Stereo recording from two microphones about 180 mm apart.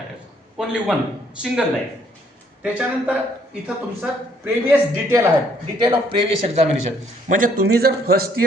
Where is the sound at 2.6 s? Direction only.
10° right (ahead or behind).